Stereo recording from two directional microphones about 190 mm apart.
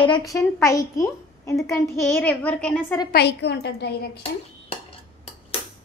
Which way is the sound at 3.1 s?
60° left (ahead or behind).